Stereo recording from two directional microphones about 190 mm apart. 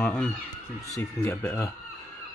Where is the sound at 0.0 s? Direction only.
5° left (ahead or behind).